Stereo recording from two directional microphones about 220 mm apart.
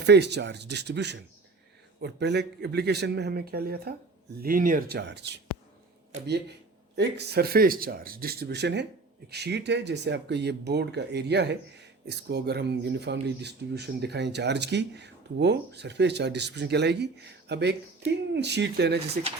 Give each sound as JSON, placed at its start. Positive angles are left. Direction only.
{"t": 0.0, "sound": "speech", "side_deg": -50}
{"t": 6.9, "sound": "speech", "side_deg": -50}